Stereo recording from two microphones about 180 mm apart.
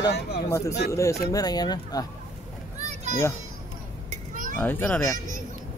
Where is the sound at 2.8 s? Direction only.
40° right (ahead or behind).